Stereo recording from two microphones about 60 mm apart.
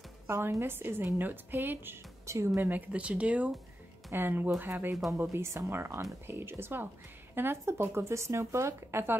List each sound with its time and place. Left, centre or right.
0.3 s a woman's voice: right
2.2 s speech: right
2.9 s speech: right
4.1 s a woman's voice: right
5.3 s a woman's voice: right